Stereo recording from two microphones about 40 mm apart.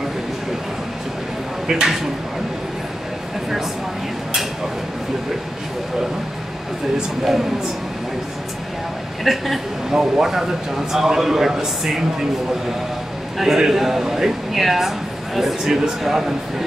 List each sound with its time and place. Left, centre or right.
1.7 s speech: centre
7.2 s speech: centre
9.2 s a woman's voice: centre
13.4 s speech: centre